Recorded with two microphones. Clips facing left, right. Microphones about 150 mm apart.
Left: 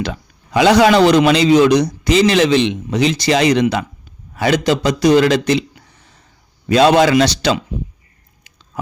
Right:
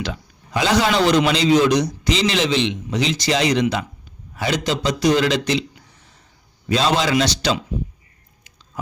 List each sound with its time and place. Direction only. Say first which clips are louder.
0.5 s a man's voice: left 8 dB; 70° left (ahead or behind); by 5.6 s 55° left (ahead or behind)
6.7 s a man's voice: left 8 dB; 60° left (ahead or behind)